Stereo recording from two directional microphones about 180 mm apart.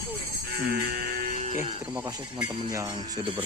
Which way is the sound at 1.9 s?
20° right (ahead or behind).